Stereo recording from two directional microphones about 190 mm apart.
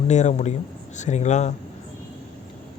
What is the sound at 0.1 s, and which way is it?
Speech, 35° left (ahead or behind).